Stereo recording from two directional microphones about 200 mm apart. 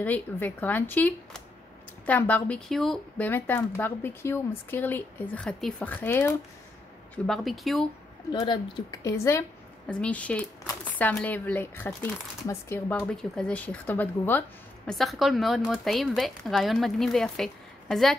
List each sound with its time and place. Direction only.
0.0 s speech: 10° left (ahead or behind)
8.3 s speech: 20° left (ahead or behind); by 18.1 s centre (ahead or behind)